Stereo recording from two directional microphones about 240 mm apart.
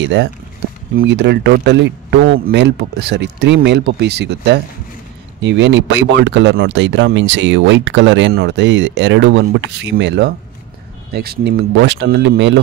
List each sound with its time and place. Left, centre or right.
0.0 s speech: right